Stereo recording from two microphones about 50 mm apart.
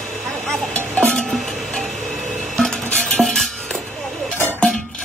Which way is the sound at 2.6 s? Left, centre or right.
Centre.